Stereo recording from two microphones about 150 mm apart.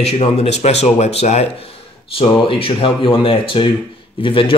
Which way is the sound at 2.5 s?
35° left (ahead or behind).